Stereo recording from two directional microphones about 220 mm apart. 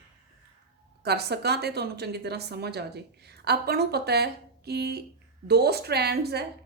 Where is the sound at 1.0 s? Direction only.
50° right (ahead or behind).